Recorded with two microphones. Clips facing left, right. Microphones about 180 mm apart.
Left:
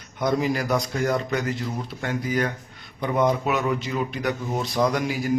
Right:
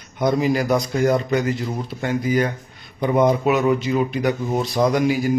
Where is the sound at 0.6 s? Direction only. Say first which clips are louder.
Right 5 dB; 15° right (ahead or behind).